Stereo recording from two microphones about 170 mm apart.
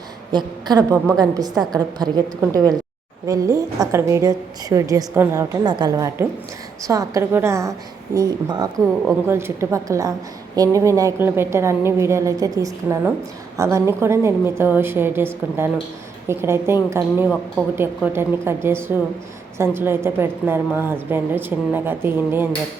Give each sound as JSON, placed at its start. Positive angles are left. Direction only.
{"t": 0.3, "sound": "a woman's voice", "side_deg": -25}